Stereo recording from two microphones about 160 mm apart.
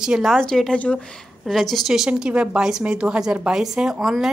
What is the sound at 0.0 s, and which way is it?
A woman's voice, centre (ahead or behind).